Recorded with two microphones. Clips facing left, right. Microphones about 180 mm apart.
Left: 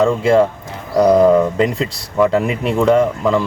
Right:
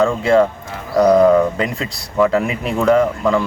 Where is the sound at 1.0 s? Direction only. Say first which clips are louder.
Even; centre (ahead or behind).